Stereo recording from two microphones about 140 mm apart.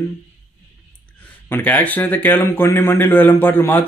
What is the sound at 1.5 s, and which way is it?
A man's voice, 15° left (ahead or behind).